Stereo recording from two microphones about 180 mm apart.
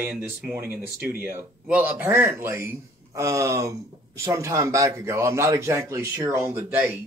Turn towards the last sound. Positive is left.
turn(degrees=-15)  # may be behind; listen again after turning